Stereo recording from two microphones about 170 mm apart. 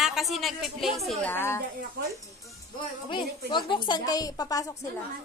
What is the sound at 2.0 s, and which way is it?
Speech, 70° right (ahead or behind).